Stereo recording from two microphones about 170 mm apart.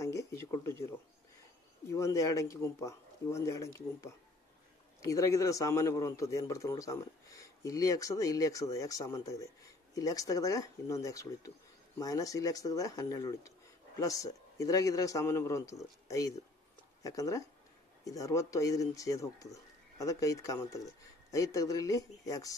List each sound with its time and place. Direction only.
0.0 s a man's voice: 15° left (ahead or behind)